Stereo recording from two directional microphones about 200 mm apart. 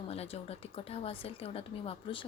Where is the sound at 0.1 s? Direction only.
30° left (ahead or behind).